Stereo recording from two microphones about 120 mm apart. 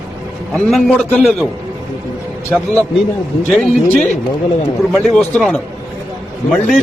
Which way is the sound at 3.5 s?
Centre (ahead or behind).